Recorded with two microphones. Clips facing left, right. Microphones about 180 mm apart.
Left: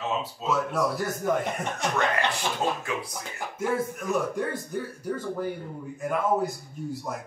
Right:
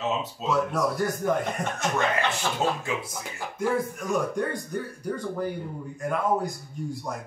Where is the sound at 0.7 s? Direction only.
Centre (ahead or behind).